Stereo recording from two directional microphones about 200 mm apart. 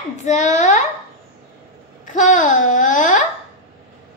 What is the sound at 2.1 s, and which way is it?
A woman's voice, 40° left (ahead or behind).